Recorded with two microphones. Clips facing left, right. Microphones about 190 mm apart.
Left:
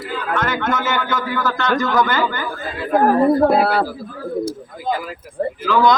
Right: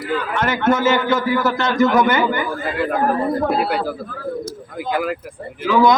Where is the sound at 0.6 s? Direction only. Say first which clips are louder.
Right 5 dB; 25° right (ahead or behind).